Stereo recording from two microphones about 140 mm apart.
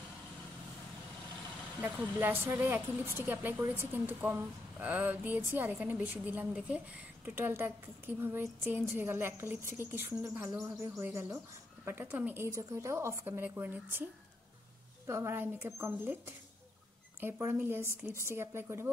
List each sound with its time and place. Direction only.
1.8 s a woman's voice: 15° right (ahead or behind)
15.0 s a woman's voice: 20° right (ahead or behind)
17.2 s speech: 15° right (ahead or behind)